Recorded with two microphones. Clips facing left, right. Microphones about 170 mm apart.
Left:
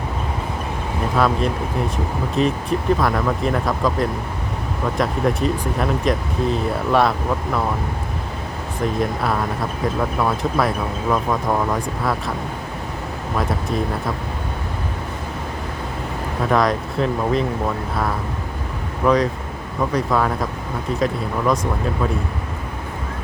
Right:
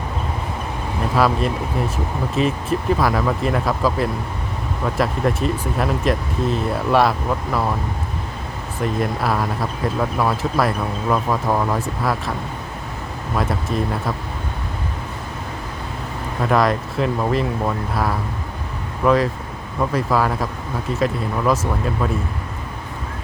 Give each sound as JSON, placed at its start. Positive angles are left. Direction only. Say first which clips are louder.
{"t": 1.1, "sound": "speech", "louder": "right 1 dB", "side_deg": -5}
{"t": 8.8, "sound": "speech", "louder": "even", "side_deg": 0}
{"t": 13.5, "sound": "speech", "louder": "even", "side_deg": 0}
{"t": 16.4, "sound": "speech", "louder": "right 1 dB", "side_deg": 0}
{"t": 19.0, "sound": "speech", "louder": "even", "side_deg": 0}